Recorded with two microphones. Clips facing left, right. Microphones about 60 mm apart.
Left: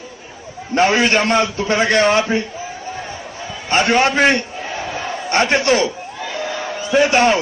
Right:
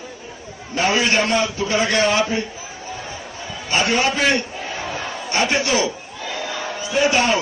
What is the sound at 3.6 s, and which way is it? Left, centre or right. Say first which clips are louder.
Speech: left 4 dB; left.